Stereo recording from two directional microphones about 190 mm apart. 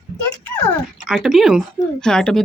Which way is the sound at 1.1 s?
Centre (ahead or behind).